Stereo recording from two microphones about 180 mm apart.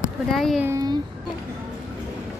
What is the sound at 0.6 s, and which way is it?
Speech, 15° right (ahead or behind).